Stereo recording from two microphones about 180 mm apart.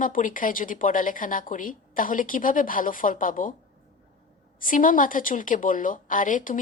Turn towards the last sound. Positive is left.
turn(degrees=50)  # may be behind; listen again after turning